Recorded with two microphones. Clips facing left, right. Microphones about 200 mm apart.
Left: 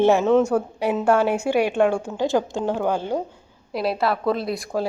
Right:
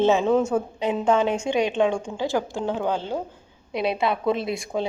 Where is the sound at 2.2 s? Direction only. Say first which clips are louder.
Left 3 dB; 20° left (ahead or behind).